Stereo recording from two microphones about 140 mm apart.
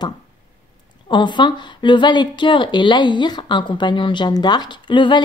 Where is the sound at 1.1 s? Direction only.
35° left (ahead or behind).